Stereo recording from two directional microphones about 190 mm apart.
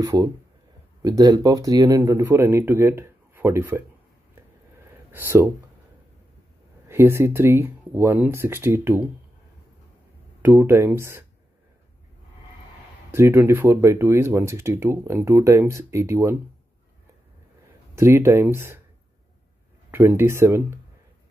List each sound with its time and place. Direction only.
0.0 s speech: 20° right (ahead or behind)
5.1 s speech: 10° right (ahead or behind)
6.9 s speech: 15° right (ahead or behind)
10.4 s speech: 10° right (ahead or behind)
13.1 s speech: 10° right (ahead or behind)
17.9 s speech: 15° right (ahead or behind)
19.9 s speech: 10° right (ahead or behind)